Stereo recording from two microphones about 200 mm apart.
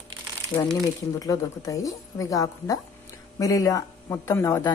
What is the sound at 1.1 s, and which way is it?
Speech, 15° left (ahead or behind).